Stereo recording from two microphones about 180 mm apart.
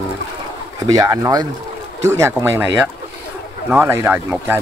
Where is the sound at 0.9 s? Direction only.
20° right (ahead or behind).